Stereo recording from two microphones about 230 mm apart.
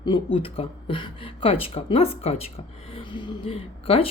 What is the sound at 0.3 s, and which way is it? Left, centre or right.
Speech, left.